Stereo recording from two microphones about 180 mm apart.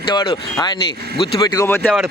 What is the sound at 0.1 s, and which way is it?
Speech, 25° left (ahead or behind).